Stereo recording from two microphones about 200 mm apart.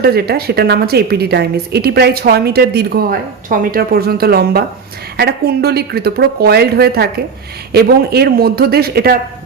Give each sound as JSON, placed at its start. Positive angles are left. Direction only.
{"t": 0.0, "sound": "a woman's voice", "side_deg": -50}